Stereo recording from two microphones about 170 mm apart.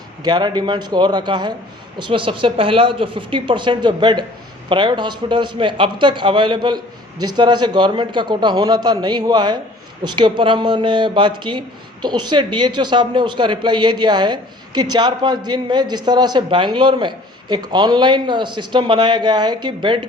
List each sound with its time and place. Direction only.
0.2 s speech: 25° right (ahead or behind)